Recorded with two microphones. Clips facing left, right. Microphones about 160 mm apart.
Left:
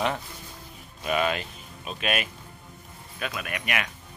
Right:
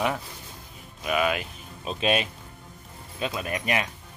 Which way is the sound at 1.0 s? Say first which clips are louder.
Right 1 dB; 5° right (ahead or behind).